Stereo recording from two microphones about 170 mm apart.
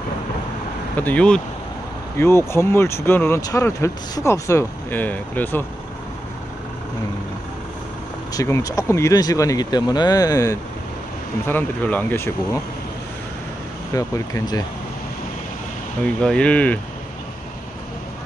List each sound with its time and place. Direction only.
0.9 s speech: 10° left (ahead or behind)
8.3 s speech: 20° left (ahead or behind)
13.9 s speech: 20° left (ahead or behind)
16.2 s speech: 5° left (ahead or behind)